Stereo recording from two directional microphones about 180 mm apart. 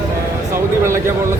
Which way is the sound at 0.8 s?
15° right (ahead or behind).